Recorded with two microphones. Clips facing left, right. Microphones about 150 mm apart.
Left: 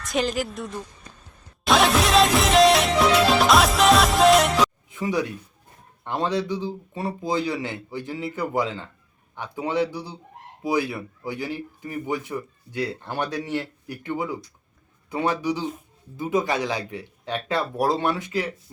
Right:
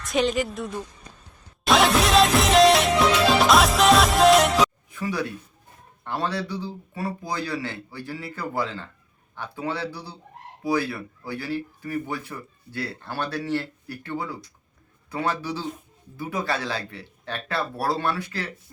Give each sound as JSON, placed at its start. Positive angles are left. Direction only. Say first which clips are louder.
{"t": 0.0, "sound": "a woman's voice", "louder": "right 2 dB", "side_deg": 0}
{"t": 1.6, "sound": "music", "louder": "even", "side_deg": 0}
{"t": 4.9, "sound": "speech", "louder": "left 3 dB", "side_deg": 20}